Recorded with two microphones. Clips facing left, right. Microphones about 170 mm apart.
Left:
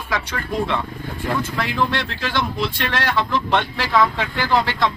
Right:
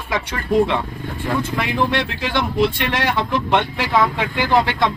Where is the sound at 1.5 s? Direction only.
15° right (ahead or behind).